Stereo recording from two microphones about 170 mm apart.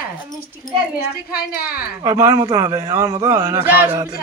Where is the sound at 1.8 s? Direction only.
15° right (ahead or behind).